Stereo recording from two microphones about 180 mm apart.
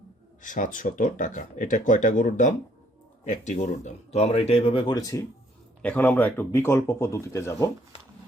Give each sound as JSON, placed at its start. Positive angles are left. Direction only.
{"t": 0.4, "sound": "speech", "side_deg": 45}
{"t": 5.8, "sound": "speech", "side_deg": 10}